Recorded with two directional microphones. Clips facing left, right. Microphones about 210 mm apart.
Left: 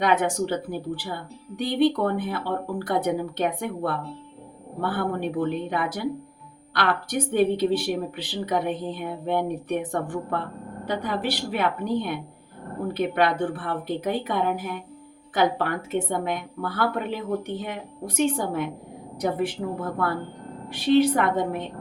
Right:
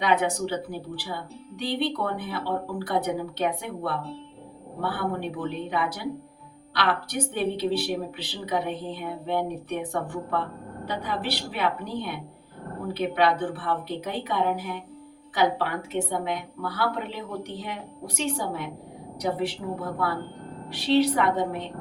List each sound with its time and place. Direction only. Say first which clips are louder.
0.0 s speech: left 2 dB; 50° left (ahead or behind)